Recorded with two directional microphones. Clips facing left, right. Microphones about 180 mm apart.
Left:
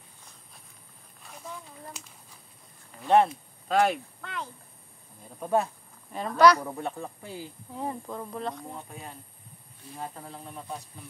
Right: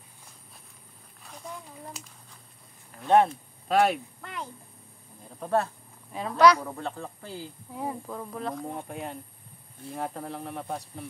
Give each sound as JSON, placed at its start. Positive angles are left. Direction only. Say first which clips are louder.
{"t": 1.2, "sound": "a sound", "louder": "right 1 dB", "side_deg": 0}
{"t": 3.0, "sound": "speech", "louder": "right 1 dB", "side_deg": 0}
{"t": 5.4, "sound": "speech", "louder": "even", "side_deg": 15}
{"t": 6.1, "sound": "a woman's voice", "louder": "even", "side_deg": 0}
{"t": 7.7, "sound": "a woman's voice", "louder": "even", "side_deg": -5}
{"t": 8.7, "sound": "speech", "louder": "right 6 dB", "side_deg": -65}